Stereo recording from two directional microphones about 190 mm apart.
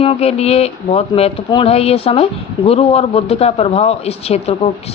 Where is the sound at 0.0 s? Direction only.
30° left (ahead or behind).